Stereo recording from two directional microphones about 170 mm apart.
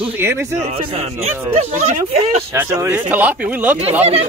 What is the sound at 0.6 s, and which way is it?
Speech, 40° right (ahead or behind).